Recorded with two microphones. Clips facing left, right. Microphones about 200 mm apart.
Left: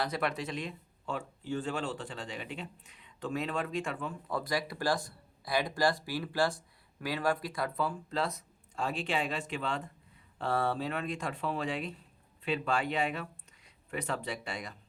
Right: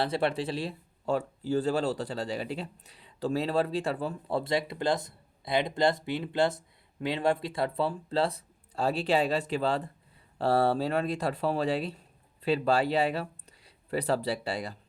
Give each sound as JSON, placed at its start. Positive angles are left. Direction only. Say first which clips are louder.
{"t": 0.0, "sound": "speech", "louder": "right 5 dB", "side_deg": -30}